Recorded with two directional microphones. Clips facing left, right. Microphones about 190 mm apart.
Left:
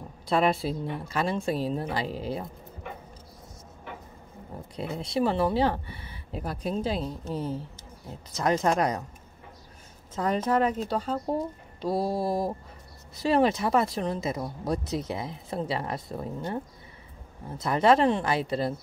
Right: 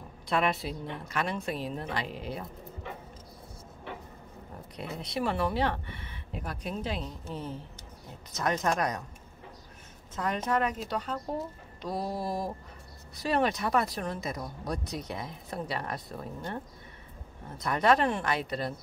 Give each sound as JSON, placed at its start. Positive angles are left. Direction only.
{"t": 0.3, "sound": "speech", "side_deg": 30}
{"t": 4.7, "sound": "speech", "side_deg": 30}
{"t": 10.1, "sound": "speech", "side_deg": 30}